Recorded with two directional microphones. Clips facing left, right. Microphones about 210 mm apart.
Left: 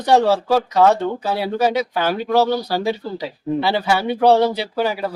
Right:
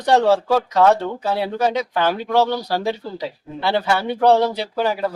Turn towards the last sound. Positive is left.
turn(degrees=5)  # may be behind; listen again after turning